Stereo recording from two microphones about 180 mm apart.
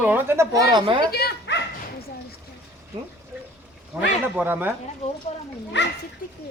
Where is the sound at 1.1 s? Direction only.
60° left (ahead or behind).